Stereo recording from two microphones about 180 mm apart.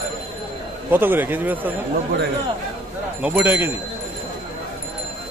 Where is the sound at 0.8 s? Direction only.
10° right (ahead or behind).